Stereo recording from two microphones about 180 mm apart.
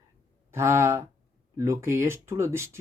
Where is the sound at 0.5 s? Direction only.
15° right (ahead or behind).